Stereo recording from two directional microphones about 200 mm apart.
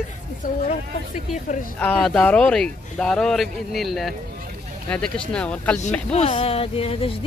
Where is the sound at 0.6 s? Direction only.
40° left (ahead or behind).